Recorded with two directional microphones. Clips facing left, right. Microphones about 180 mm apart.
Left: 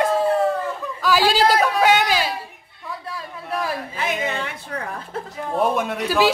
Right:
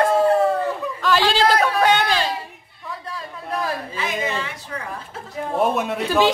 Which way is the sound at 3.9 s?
55° left (ahead or behind).